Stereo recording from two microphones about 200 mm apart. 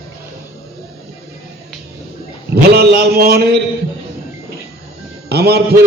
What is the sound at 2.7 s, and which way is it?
Speech, 50° right (ahead or behind).